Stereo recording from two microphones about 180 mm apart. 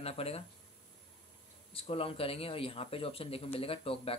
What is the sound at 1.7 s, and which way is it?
Speech, 30° left (ahead or behind).